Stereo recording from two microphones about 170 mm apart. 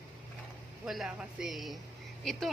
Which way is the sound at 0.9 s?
Centre (ahead or behind).